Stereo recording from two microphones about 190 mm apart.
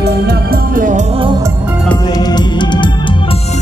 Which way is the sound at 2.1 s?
20° left (ahead or behind).